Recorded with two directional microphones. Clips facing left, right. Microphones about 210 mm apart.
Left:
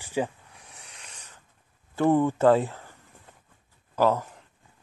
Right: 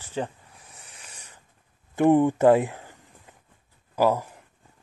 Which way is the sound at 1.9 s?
15° right (ahead or behind).